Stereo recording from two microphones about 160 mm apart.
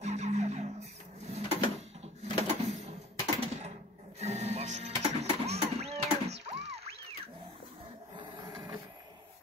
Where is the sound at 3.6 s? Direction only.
45° right (ahead or behind).